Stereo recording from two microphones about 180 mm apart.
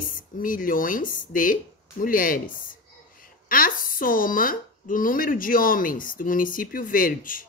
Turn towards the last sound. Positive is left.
turn(degrees=50)  # may be behind; listen again after turning